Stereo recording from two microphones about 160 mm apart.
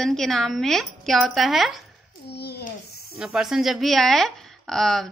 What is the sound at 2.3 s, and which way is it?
Speech, 90° left.